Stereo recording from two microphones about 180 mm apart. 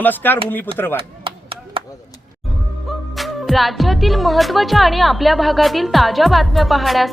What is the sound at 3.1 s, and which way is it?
Speech, centre (ahead or behind).